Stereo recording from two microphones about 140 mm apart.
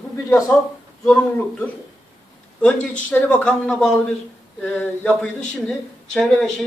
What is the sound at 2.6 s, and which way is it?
Speech, 10° left (ahead or behind).